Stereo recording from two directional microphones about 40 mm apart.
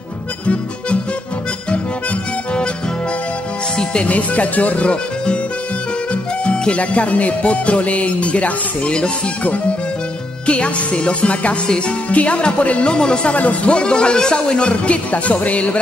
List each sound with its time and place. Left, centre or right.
3.7 s speech: left
6.4 s music: left
6.8 s speech: left
13.4 s speech: left
13.7 s speech: left